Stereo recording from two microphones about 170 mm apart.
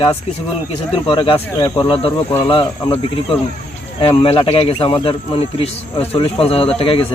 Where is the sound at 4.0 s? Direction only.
35° left (ahead or behind).